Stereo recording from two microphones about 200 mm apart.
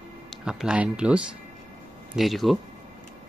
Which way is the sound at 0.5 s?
5° right (ahead or behind).